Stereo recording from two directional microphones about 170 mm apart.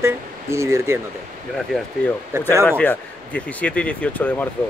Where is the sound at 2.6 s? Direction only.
10° left (ahead or behind).